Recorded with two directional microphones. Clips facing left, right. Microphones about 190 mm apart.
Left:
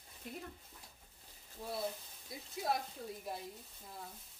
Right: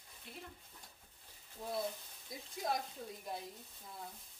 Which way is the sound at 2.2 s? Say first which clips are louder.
Left 2 dB; 5° left (ahead or behind).